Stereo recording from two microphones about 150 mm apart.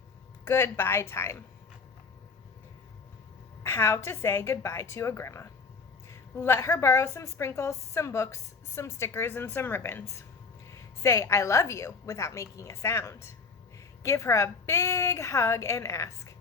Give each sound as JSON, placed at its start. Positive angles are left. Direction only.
{"t": 0.4, "sound": "speech", "side_deg": 15}
{"t": 3.6, "sound": "a woman's voice", "side_deg": 15}